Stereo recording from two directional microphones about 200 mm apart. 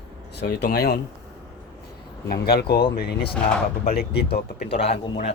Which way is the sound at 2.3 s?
50° left (ahead or behind).